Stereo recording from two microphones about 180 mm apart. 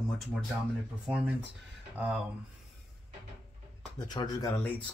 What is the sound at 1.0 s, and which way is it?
Speech, 5° right (ahead or behind).